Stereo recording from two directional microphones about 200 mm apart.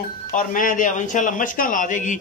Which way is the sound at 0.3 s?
40° left (ahead or behind).